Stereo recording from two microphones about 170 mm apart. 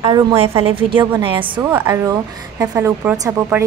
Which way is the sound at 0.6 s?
30° right (ahead or behind).